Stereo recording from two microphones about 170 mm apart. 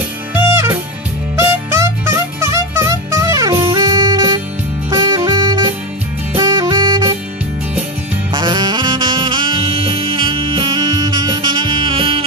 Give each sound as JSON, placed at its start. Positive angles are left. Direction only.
{"t": 0.3, "sound": "music", "side_deg": -15}
{"t": 6.3, "sound": "saxophone", "side_deg": -25}
{"t": 8.3, "sound": "saxophone", "side_deg": -25}